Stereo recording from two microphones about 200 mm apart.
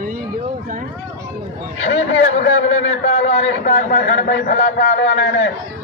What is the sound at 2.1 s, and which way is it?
Speech, 75° left (ahead or behind).